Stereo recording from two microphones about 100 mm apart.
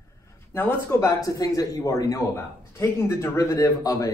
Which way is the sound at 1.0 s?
35° left (ahead or behind).